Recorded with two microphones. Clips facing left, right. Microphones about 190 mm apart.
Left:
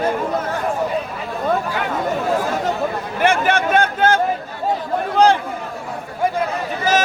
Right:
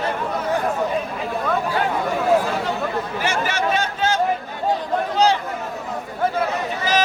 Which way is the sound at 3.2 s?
55° left (ahead or behind).